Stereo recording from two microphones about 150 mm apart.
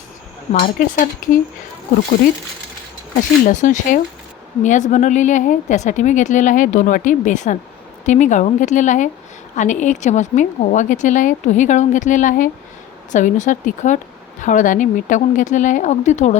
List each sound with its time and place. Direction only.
0.6 s speech: 65° left (ahead or behind)
3.2 s speech: 60° left (ahead or behind)